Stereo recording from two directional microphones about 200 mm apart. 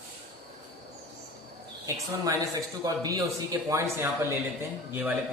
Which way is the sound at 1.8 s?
15° right (ahead or behind).